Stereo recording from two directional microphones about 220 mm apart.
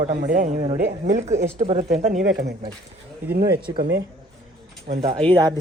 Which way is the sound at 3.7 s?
50° right (ahead or behind).